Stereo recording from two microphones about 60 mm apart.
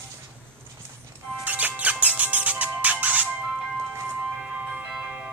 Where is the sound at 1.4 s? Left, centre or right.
Right.